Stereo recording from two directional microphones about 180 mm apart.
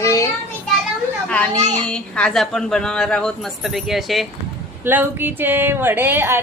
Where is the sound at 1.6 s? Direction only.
40° right (ahead or behind).